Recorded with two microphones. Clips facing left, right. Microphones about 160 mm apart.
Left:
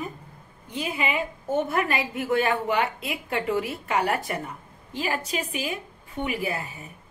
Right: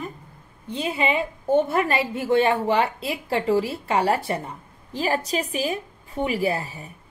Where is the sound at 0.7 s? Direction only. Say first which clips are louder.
Right 4 dB; 30° right (ahead or behind).